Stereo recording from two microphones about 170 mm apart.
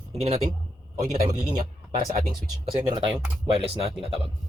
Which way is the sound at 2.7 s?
25° right (ahead or behind).